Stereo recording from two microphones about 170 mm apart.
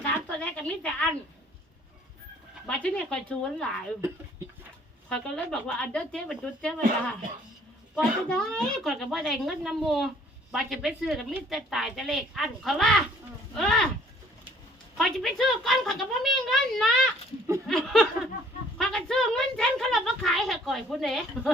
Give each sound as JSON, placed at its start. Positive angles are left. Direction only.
{"t": 0.0, "sound": "a sound", "side_deg": 10}
{"t": 2.6, "sound": "a woman's voice", "side_deg": 5}
{"t": 5.0, "sound": "a woman's voice", "side_deg": 5}
{"t": 7.9, "sound": "a woman's voice", "side_deg": 5}
{"t": 14.9, "sound": "a woman's voice", "side_deg": 0}